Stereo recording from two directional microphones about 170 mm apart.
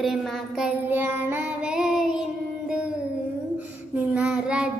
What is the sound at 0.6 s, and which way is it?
Child singing, 10° right (ahead or behind).